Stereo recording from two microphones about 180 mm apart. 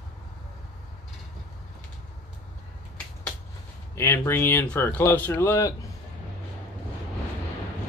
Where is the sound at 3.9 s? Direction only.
15° left (ahead or behind).